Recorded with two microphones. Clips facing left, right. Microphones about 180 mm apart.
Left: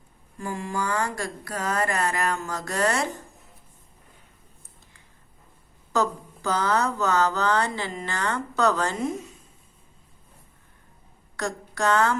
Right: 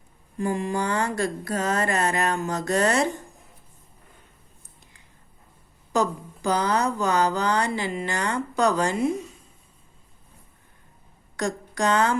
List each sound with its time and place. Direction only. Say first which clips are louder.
0.3 s speech: right 5 dB; 20° right (ahead or behind)
5.9 s speech: right 1 dB; 15° right (ahead or behind)
11.3 s speech: right 2 dB; 15° right (ahead or behind)